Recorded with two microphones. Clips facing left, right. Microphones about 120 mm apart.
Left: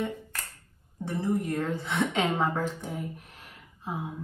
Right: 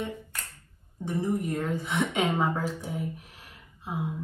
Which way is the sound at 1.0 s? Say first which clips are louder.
Even; 15° right (ahead or behind).